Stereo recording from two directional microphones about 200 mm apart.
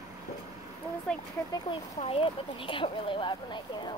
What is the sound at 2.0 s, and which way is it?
Speech, 30° left (ahead or behind).